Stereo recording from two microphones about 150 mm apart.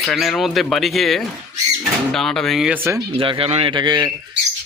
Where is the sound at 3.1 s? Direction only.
35° right (ahead or behind).